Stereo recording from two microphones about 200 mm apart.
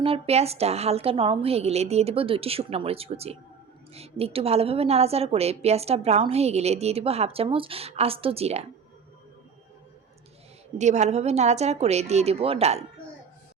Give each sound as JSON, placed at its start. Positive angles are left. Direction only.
{"t": 0.0, "sound": "a woman's voice", "side_deg": -30}
{"t": 10.8, "sound": "a woman's voice", "side_deg": -35}